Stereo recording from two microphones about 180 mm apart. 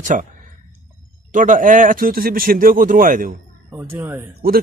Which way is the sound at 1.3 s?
45° right (ahead or behind).